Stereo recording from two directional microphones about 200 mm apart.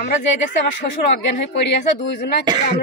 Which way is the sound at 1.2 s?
60° left (ahead or behind).